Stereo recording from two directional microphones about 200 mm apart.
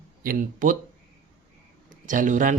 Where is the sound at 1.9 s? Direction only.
40° right (ahead or behind).